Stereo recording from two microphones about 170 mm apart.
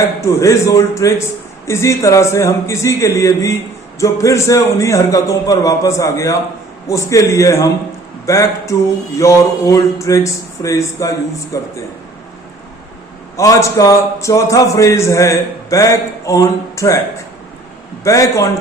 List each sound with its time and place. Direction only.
0.2 s a man's voice: 20° left (ahead or behind)
13.3 s a man's voice: 20° left (ahead or behind)
18.0 s a man's voice: 20° left (ahead or behind)